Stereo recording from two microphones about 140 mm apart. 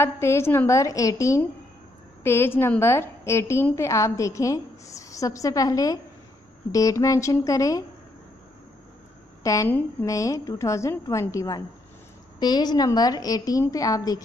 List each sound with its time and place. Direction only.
0.0 s a woman's voice: 20° left (ahead or behind)
9.4 s a woman's voice: 25° left (ahead or behind)